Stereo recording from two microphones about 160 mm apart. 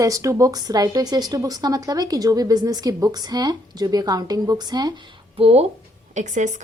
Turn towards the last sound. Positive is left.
turn(degrees=-50)  # may be behind; listen again after turning